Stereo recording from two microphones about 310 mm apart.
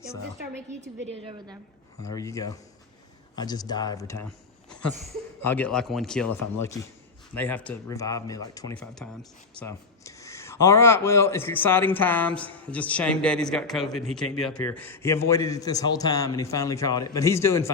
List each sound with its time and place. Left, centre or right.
1.2 s a woman's voice: centre
2.0 s a man's voice: centre
7.3 s a man's voice: centre